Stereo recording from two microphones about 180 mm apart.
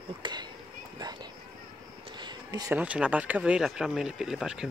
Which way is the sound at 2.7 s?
5° right (ahead or behind).